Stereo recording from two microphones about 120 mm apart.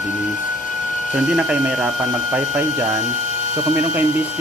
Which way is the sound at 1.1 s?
5° right (ahead or behind).